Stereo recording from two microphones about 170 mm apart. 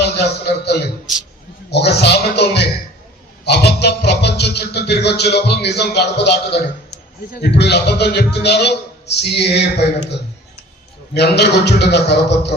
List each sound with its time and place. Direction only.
0.0 s music: 75° left (ahead or behind)
11.1 s music: 75° left (ahead or behind)